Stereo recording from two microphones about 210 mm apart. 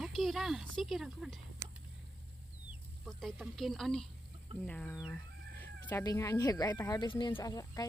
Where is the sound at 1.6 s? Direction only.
15° right (ahead or behind).